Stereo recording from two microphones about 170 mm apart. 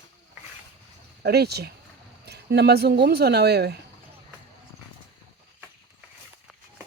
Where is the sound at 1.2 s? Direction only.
70° right (ahead or behind).